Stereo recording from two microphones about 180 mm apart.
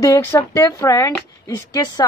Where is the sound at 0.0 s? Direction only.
15° left (ahead or behind).